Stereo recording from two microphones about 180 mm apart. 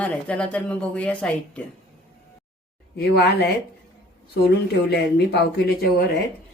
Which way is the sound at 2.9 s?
65° left (ahead or behind).